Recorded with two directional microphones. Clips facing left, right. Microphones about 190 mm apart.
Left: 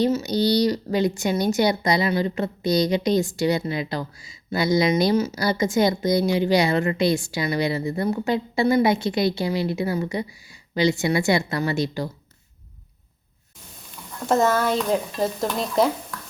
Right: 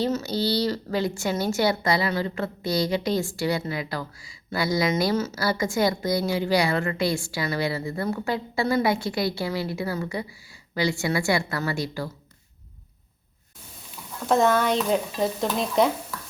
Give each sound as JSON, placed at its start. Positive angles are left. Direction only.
{"t": 0.0, "sound": "a woman's voice", "side_deg": 15}
{"t": 14.3, "sound": "stir", "side_deg": 0}